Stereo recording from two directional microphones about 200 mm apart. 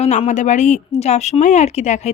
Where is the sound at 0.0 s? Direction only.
35° left (ahead or behind).